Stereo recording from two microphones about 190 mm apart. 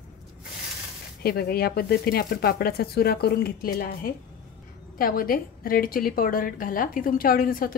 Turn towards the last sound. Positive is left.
turn(degrees=50)  # may be behind; listen again after turning